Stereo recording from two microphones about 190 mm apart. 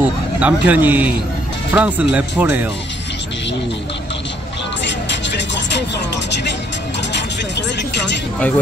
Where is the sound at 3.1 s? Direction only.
70° left (ahead or behind).